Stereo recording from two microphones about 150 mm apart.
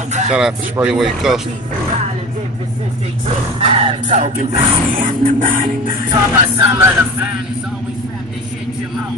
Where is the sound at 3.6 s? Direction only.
40° right (ahead or behind).